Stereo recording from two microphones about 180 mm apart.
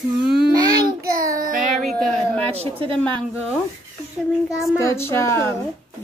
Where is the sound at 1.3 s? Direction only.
50° right (ahead or behind).